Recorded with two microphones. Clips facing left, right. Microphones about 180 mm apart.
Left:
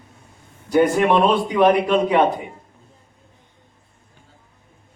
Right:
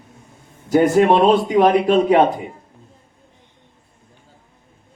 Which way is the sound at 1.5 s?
45° right (ahead or behind).